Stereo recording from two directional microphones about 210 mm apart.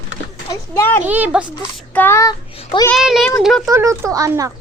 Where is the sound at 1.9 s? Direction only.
10° left (ahead or behind).